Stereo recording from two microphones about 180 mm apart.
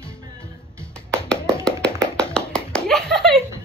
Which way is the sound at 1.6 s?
5° left (ahead or behind).